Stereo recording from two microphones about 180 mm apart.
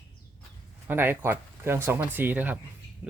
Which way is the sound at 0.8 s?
10° right (ahead or behind).